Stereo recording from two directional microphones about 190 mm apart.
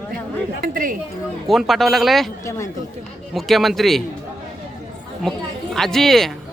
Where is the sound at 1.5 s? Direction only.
Centre (ahead or behind).